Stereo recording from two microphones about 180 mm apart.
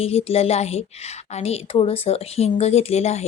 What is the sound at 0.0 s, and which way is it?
A woman's voice, 35° left (ahead or behind).